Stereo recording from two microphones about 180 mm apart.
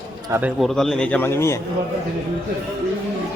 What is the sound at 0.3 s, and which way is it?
Speech, 10° right (ahead or behind).